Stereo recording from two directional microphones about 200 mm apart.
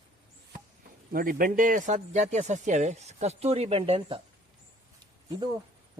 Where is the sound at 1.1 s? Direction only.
45° right (ahead or behind); by 4.2 s 30° right (ahead or behind).